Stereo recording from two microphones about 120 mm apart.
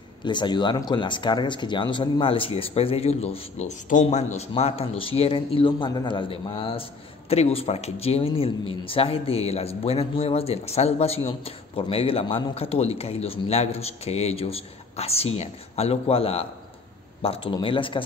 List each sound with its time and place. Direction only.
0.2 s speech: 40° left (ahead or behind)